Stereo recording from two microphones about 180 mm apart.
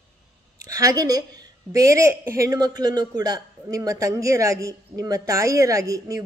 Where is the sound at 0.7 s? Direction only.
20° right (ahead or behind).